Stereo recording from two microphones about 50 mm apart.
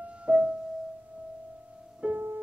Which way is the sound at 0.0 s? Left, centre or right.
Right.